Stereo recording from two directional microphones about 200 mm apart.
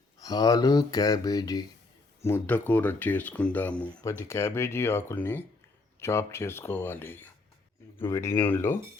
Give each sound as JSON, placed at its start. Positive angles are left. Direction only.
{"t": 0.2, "sound": "speech", "side_deg": 20}